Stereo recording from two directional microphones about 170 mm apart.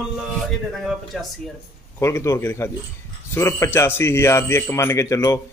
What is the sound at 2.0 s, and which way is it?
A man's voice, 15° left (ahead or behind).